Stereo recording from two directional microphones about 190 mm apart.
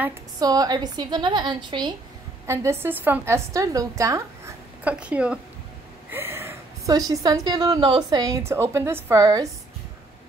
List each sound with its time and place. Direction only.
0.4 s a woman's voice: 20° right (ahead or behind)